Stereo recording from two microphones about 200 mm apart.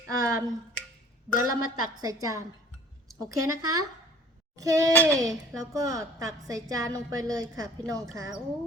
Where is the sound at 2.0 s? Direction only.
20° right (ahead or behind).